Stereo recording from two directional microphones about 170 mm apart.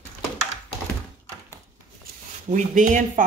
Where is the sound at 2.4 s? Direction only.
45° right (ahead or behind).